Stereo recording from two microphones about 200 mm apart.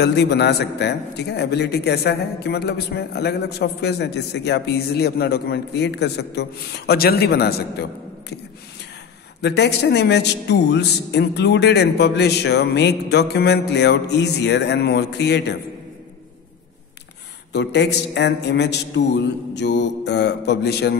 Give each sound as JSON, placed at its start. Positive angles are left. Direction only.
{"t": 0.0, "sound": "a man's voice", "side_deg": 55}
{"t": 9.4, "sound": "a man's voice", "side_deg": 55}
{"t": 17.5, "sound": "a man's voice", "side_deg": 60}